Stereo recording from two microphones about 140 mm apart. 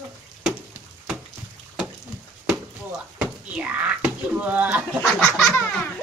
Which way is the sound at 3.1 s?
10° right (ahead or behind).